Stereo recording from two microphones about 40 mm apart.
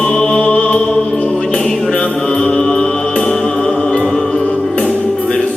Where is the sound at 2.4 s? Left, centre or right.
Left.